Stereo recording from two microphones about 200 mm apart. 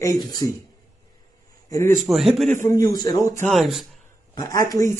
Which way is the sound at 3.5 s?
Centre (ahead or behind).